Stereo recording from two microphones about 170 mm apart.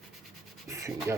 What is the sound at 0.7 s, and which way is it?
Rub, 15° right (ahead or behind).